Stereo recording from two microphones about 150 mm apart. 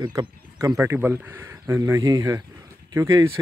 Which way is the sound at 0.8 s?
15° right (ahead or behind).